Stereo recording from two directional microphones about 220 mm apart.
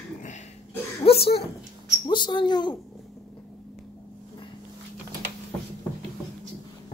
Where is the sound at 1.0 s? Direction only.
25° left (ahead or behind).